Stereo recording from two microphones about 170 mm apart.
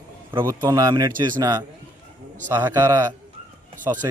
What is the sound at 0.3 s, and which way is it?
A man's voice, 15° right (ahead or behind).